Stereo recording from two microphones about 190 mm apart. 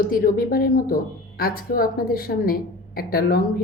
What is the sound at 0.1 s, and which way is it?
Speech, 50° left (ahead or behind).